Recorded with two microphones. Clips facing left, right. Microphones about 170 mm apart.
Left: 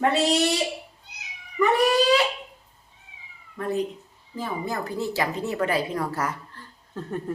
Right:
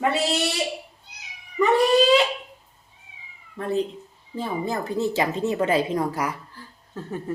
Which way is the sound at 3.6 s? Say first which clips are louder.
Right 2 dB; 25° right (ahead or behind).